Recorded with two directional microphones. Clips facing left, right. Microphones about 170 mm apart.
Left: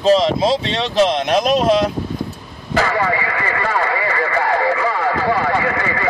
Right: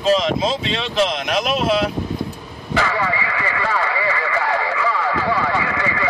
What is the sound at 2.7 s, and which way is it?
Radio, 45° left (ahead or behind).